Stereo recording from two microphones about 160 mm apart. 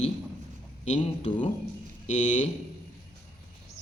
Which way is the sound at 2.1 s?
50° left (ahead or behind).